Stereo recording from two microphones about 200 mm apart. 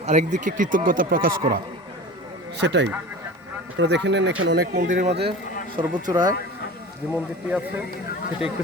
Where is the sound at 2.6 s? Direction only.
60° right (ahead or behind); by 5.1 s 40° right (ahead or behind).